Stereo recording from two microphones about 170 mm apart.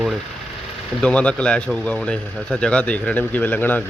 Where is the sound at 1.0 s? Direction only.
10° left (ahead or behind).